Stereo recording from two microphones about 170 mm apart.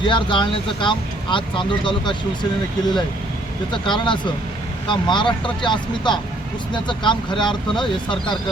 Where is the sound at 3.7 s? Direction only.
30° left (ahead or behind).